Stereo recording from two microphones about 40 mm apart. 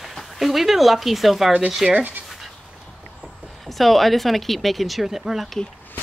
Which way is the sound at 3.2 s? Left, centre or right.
Centre.